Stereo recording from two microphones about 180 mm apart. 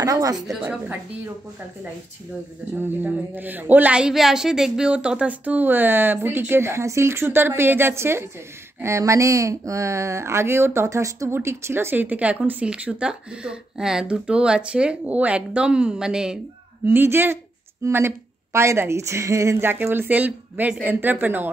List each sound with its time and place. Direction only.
0.0 s a woman's voice: 20° right (ahead or behind)
2.7 s speech: 10° right (ahead or behind)